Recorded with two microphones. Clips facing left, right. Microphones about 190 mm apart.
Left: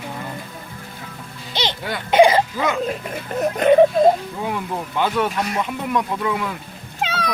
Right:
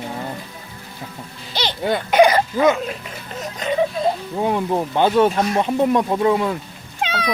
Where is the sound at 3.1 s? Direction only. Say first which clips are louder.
Left 8 dB; 60° left (ahead or behind).